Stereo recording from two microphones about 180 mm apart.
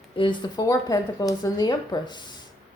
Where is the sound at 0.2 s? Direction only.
25° left (ahead or behind).